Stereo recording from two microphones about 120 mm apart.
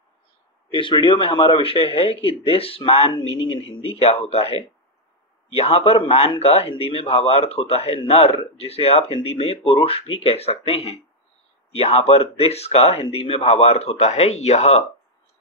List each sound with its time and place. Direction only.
0.7 s speech: 45° left (ahead or behind); by 14.9 s 65° left (ahead or behind)